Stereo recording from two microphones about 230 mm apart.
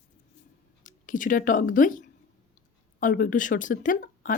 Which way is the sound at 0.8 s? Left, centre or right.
Left.